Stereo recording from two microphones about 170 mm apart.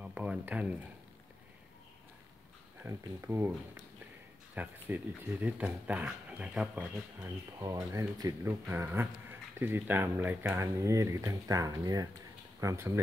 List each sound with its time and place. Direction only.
0.0 s a sound: 10° right (ahead or behind)
2.8 s speech: 15° right (ahead or behind)
7.5 s speech: 20° right (ahead or behind)